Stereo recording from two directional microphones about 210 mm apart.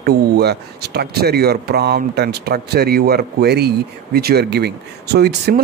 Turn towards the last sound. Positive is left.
turn(degrees=-50)  # may be behind; listen again after turning